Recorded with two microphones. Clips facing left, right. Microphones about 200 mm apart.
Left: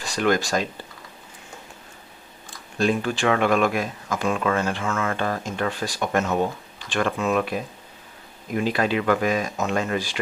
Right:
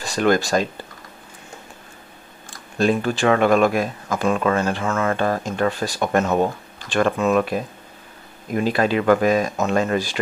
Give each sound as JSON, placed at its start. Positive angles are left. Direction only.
{"t": 0.0, "sound": "a sound", "side_deg": -40}
{"t": 2.8, "sound": "speech", "side_deg": -40}
{"t": 8.5, "sound": "speech", "side_deg": -40}